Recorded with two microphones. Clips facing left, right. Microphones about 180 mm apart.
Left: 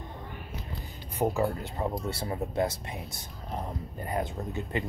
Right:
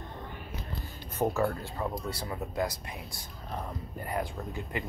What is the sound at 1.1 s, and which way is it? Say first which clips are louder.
Speech: left 1 dB; 15° left (ahead or behind).